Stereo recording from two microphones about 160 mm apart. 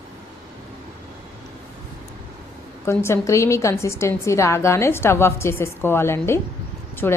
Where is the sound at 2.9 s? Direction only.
15° left (ahead or behind).